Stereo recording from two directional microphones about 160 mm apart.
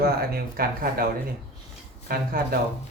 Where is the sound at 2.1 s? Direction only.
65° right (ahead or behind).